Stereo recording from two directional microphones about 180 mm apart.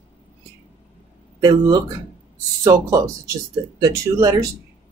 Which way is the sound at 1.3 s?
25° right (ahead or behind).